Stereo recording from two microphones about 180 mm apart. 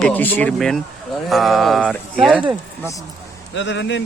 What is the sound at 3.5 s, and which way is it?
Speech, 85° left.